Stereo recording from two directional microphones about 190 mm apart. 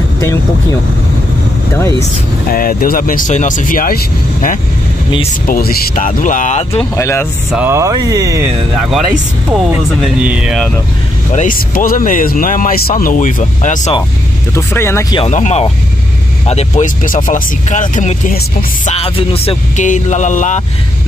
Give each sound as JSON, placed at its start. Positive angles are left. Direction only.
{"t": 2.5, "sound": "speech", "side_deg": 50}
{"t": 6.8, "sound": "speech", "side_deg": 10}
{"t": 7.5, "sound": "speech", "side_deg": -10}
{"t": 9.8, "sound": "speech", "side_deg": -5}
{"t": 11.3, "sound": "speech", "side_deg": 45}
{"t": 14.5, "sound": "speech", "side_deg": 15}
{"t": 15.1, "sound": "speech", "side_deg": 35}
{"t": 18.9, "sound": "speech", "side_deg": 30}